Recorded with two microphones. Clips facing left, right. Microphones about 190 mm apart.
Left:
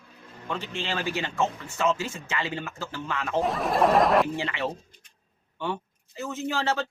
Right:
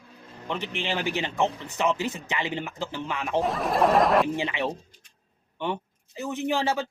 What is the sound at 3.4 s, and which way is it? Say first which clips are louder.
Speech: even; centre (ahead or behind).